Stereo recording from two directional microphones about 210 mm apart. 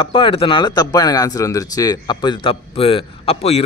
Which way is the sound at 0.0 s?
25° left (ahead or behind).